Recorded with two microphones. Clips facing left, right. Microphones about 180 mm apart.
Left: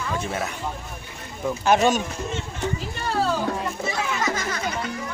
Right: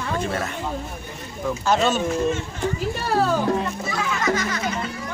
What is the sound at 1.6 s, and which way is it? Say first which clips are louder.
Speech: left 2 dB; 15° left (ahead or behind).